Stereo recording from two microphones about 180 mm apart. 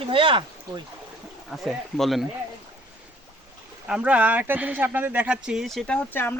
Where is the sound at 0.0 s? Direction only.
30° right (ahead or behind).